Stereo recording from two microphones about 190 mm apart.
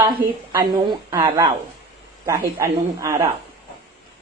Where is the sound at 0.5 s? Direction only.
25° right (ahead or behind).